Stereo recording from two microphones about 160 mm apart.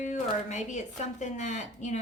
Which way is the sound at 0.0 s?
45° left (ahead or behind).